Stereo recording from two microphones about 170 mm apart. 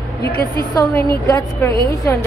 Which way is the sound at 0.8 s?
20° left (ahead or behind).